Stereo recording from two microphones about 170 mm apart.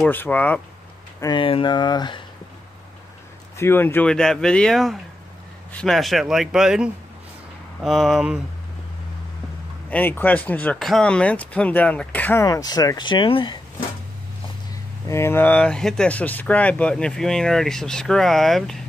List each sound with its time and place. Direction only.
0.0 s speech: 10° left (ahead or behind)
1.2 s speech: 30° left (ahead or behind)
3.5 s speech: 15° left (ahead or behind); by 8.4 s 5° right (ahead or behind)
9.8 s speech: 10° left (ahead or behind); by 13.6 s 30° left (ahead or behind)
15.0 s speech: 15° left (ahead or behind)